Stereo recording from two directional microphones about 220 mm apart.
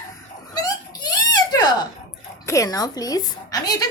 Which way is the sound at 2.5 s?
15° left (ahead or behind).